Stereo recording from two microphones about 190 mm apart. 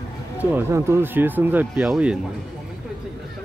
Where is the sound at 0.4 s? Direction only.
10° right (ahead or behind).